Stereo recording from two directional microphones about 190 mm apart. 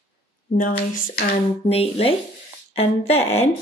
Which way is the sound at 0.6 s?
45° left (ahead or behind).